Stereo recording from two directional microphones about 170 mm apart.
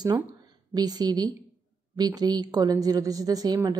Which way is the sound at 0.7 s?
25° right (ahead or behind).